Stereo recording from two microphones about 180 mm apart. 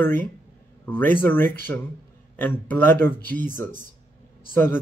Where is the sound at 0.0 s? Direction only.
10° left (ahead or behind).